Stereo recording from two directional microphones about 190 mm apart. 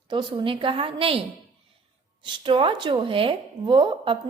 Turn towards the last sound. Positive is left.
turn(degrees=-25)  # may be behind; listen again after turning